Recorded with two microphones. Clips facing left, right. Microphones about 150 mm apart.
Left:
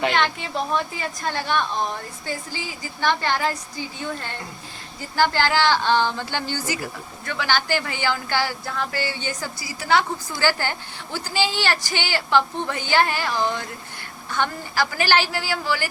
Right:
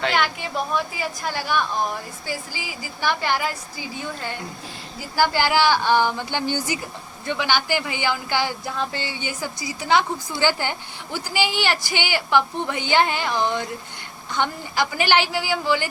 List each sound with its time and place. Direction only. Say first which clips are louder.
0.1 s a woman's voice: even; 5° right (ahead or behind)
5.1 s a woman's voice: right 1 dB; 10° right (ahead or behind)